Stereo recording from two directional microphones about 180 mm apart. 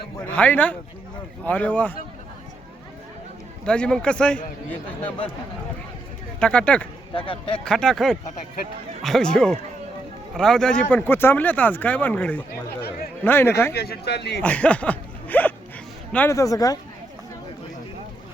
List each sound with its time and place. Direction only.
0.2 s speech: 5° left (ahead or behind)
3.7 s a man's voice: 5° left (ahead or behind)
6.4 s speech: 5° left (ahead or behind)
7.1 s speech: 30° left (ahead or behind)
7.6 s a man's voice: 5° left (ahead or behind)
13.7 s speech: 60° left (ahead or behind)
14.4 s speech: 5° left (ahead or behind)